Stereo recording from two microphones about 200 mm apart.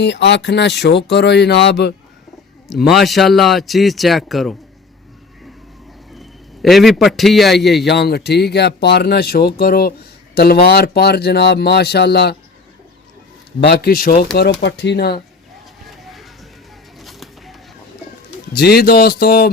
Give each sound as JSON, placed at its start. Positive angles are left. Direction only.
{"t": 0.0, "sound": "speech", "side_deg": 60}
{"t": 2.6, "sound": "a man's voice", "side_deg": 0}
{"t": 6.1, "sound": "a man's voice", "side_deg": 0}
{"t": 7.9, "sound": "speech", "side_deg": 55}
{"t": 13.6, "sound": "speech", "side_deg": 50}
{"t": 14.3, "sound": "speech", "side_deg": 60}
{"t": 15.9, "sound": "a sound", "side_deg": 0}
{"t": 17.0, "sound": "bird", "side_deg": 0}
{"t": 18.5, "sound": "speech", "side_deg": 50}